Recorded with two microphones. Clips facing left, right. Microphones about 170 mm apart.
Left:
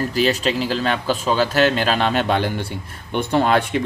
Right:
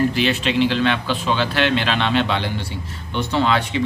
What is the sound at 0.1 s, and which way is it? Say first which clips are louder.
A man's voice: left 1 dB; 40° left (ahead or behind).